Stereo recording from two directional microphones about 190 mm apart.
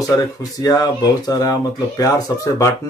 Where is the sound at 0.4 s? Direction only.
20° left (ahead or behind).